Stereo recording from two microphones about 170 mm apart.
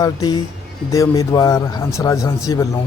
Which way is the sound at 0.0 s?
20° left (ahead or behind).